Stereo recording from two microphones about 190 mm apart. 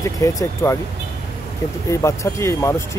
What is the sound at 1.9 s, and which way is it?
Speech, 15° left (ahead or behind).